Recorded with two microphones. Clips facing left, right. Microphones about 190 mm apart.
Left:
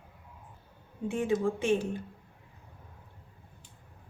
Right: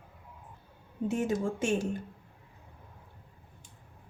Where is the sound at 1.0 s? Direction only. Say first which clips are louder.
Left 1 dB; 40° right (ahead or behind).